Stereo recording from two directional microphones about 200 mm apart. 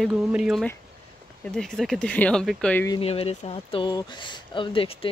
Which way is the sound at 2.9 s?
30° left (ahead or behind).